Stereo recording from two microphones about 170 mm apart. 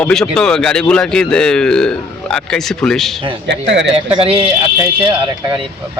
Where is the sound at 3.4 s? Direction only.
90° right.